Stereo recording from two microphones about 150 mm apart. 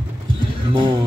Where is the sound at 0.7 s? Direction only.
35° right (ahead or behind).